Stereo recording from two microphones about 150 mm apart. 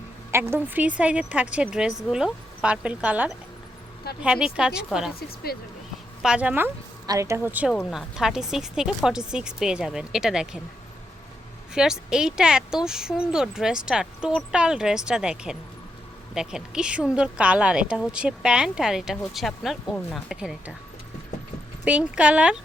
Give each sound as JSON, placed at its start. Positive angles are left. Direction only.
{"t": 0.3, "sound": "speech", "side_deg": -15}
{"t": 5.5, "sound": "speech", "side_deg": 90}
{"t": 6.2, "sound": "speech", "side_deg": -10}
{"t": 7.1, "sound": "speech", "side_deg": -20}
{"t": 11.7, "sound": "speech", "side_deg": -5}
{"t": 21.8, "sound": "speech", "side_deg": -10}